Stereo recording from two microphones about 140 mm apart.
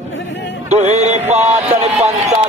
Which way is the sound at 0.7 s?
50° right (ahead or behind).